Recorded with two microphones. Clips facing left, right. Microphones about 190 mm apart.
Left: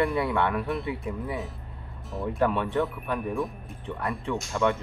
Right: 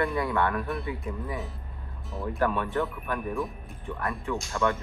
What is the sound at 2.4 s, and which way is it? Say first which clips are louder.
Speech: left 2 dB; 25° left (ahead or behind).